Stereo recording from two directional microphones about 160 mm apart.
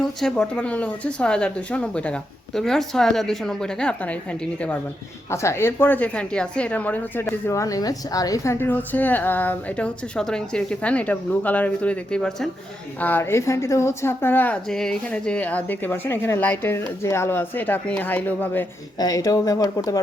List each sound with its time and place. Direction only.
0.0 s a woman's voice: 5° left (ahead or behind)
18.9 s speech: 20° left (ahead or behind)